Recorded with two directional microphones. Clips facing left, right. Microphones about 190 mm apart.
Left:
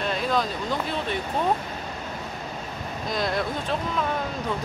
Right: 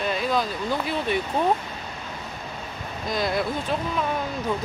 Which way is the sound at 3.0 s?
Centre (ahead or behind).